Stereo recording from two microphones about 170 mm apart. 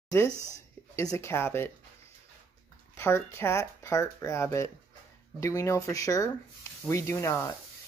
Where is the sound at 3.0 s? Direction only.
15° left (ahead or behind).